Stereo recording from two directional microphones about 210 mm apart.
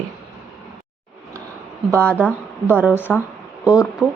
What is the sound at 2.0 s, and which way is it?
Speech, 5° left (ahead or behind).